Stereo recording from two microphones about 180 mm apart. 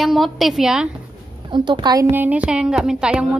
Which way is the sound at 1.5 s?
25° right (ahead or behind).